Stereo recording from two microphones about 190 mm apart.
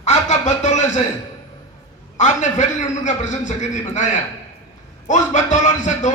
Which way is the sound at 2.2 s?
40° left (ahead or behind).